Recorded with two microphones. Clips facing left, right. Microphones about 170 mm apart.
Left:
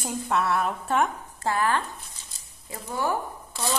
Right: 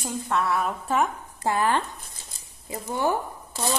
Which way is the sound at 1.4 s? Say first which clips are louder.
Right 2 dB; 20° right (ahead or behind).